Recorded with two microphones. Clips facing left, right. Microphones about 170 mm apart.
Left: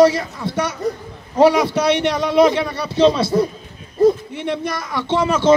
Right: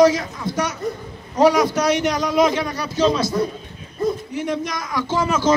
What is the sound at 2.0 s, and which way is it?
Speech, 5° left (ahead or behind).